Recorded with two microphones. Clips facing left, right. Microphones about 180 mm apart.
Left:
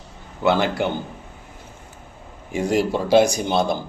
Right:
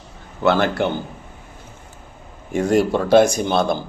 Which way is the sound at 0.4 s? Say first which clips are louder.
Right 2 dB; 15° left (ahead or behind).